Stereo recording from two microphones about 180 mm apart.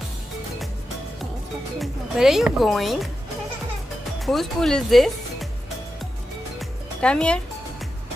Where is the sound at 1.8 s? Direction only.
Centre (ahead or behind).